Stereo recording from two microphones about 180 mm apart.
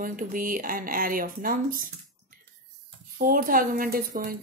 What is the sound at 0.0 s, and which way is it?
A woman's voice, 50° right (ahead or behind).